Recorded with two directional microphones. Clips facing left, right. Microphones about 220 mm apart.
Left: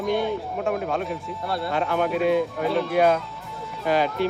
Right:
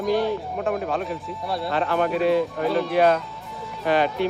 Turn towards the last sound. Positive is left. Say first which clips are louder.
# right 1 dB
turn(degrees=0)  # may be behind; listen again after turning